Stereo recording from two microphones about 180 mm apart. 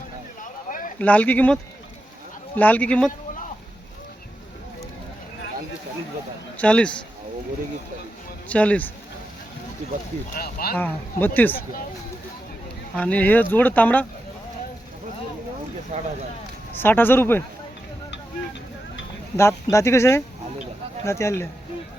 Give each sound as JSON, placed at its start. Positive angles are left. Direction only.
{"t": 0.7, "sound": "a sound", "side_deg": 50}
{"t": 0.9, "sound": "speech", "side_deg": 10}
{"t": 2.6, "sound": "speech", "side_deg": 10}
{"t": 6.6, "sound": "speech", "side_deg": 5}
{"t": 8.4, "sound": "speech", "side_deg": 5}
{"t": 10.2, "sound": "speech", "side_deg": 55}
{"t": 10.8, "sound": "speech", "side_deg": 10}
{"t": 13.0, "sound": "speech", "side_deg": 10}
{"t": 15.9, "sound": "speech", "side_deg": -40}
{"t": 16.8, "sound": "speech", "side_deg": 10}
{"t": 19.4, "sound": "speech", "side_deg": 15}